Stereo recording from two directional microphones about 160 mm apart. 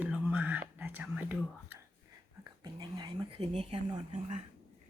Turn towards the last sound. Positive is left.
turn(degrees=-45)  # may be behind; listen again after turning